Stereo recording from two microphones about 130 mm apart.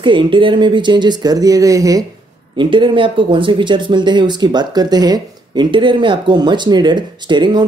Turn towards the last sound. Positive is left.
turn(degrees=-35)  # may be behind; listen again after turning